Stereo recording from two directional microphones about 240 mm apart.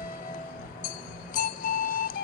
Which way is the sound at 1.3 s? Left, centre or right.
Left.